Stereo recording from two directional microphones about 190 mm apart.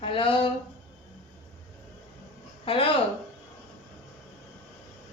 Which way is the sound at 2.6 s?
30° left (ahead or behind).